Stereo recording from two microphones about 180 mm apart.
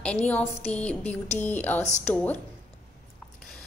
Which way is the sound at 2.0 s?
10° left (ahead or behind).